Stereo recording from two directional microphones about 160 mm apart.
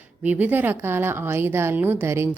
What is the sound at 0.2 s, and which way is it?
A woman's voice, 10° right (ahead or behind).